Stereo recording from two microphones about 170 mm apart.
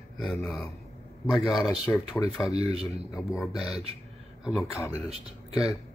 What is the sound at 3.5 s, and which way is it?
Speech, 5° right (ahead or behind).